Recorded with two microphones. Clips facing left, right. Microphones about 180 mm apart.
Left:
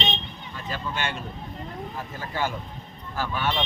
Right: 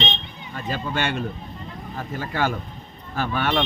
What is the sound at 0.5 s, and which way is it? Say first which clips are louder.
Speech: right 5 dB; 70° right (ahead or behind).